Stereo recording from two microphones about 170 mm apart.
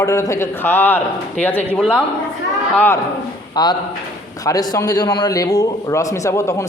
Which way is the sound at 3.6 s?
25° left (ahead or behind).